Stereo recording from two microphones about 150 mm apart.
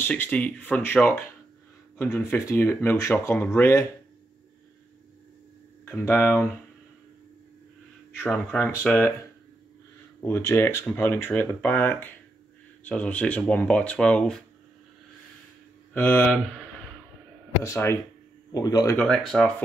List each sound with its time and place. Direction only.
0.0 s speech: 10° left (ahead or behind)
5.9 s speech: 15° left (ahead or behind)
8.5 s speech: 10° left (ahead or behind)
10.2 s speech: 15° left (ahead or behind)
15.9 s speech: 10° left (ahead or behind)
17.6 s speech: 20° left (ahead or behind)
18.9 s speech: 5° left (ahead or behind)